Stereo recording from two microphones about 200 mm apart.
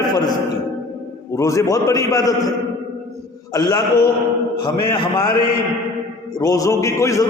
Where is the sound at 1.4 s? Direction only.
15° left (ahead or behind).